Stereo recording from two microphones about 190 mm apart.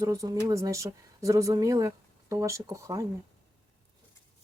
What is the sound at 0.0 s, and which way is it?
Speech, 15° right (ahead or behind).